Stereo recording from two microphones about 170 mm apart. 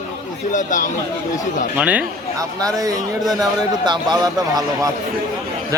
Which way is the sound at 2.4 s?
20° right (ahead or behind).